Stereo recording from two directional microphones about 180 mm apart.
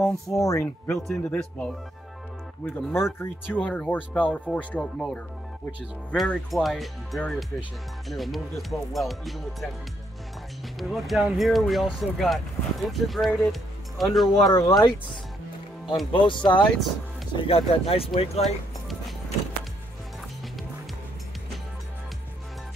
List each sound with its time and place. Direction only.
0.3 s speech: 20° left (ahead or behind)
1.0 s speech: 5° left (ahead or behind)
10.8 s speech: centre (ahead or behind)
14.4 s speech: 20° left (ahead or behind)
16.1 s speech: 25° left (ahead or behind)